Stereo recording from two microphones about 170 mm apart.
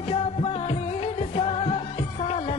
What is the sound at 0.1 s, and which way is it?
Music, 40° left (ahead or behind).